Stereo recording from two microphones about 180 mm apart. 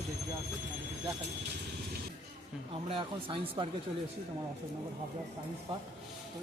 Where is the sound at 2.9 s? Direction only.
30° right (ahead or behind).